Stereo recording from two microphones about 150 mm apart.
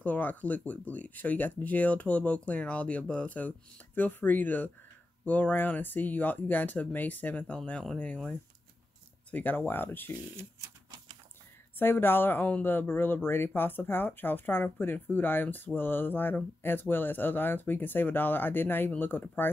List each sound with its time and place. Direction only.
0.0 s speech: 10° left (ahead or behind)
11.8 s speech: 15° left (ahead or behind)